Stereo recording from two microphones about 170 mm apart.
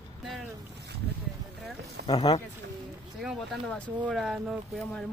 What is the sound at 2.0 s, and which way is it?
Speech, 65° right (ahead or behind).